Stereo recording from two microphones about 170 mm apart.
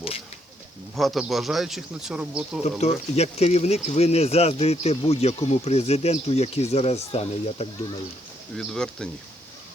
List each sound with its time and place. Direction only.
0.9 s a man's voice: centre (ahead or behind)
2.6 s speech: 40° left (ahead or behind)
8.5 s a man's voice: 5° left (ahead or behind)